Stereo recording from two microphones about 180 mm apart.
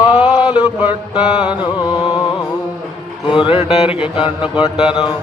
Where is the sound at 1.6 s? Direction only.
30° left (ahead or behind).